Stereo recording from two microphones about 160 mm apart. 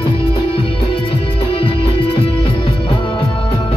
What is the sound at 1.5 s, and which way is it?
Music, 35° left (ahead or behind).